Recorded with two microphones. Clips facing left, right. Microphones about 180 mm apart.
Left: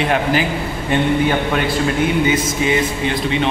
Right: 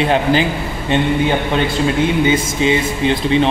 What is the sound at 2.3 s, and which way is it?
A man's voice, 25° right (ahead or behind).